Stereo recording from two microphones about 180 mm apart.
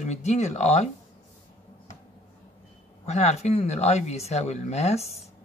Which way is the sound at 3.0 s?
40° left (ahead or behind).